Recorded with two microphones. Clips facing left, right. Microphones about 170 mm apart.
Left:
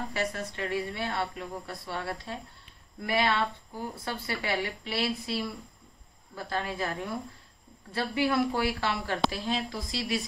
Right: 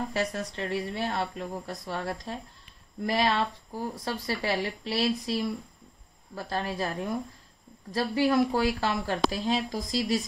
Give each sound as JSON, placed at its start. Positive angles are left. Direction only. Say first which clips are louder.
{"t": 0.1, "sound": "speech", "louder": "right 2 dB", "side_deg": -40}